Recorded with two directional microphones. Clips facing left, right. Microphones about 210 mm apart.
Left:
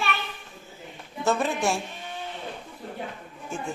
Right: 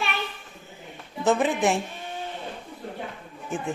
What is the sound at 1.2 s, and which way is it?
Speech, 15° right (ahead or behind).